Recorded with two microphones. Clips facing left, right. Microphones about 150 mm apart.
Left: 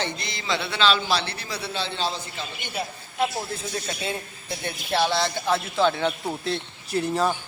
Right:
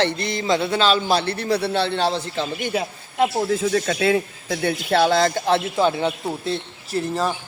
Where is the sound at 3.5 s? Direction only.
90° right; by 5.2 s 55° right (ahead or behind).